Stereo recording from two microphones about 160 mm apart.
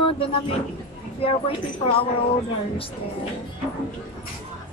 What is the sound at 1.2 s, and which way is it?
Speech, 35° left (ahead or behind).